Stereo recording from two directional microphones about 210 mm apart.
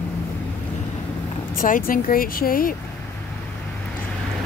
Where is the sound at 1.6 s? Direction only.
40° left (ahead or behind).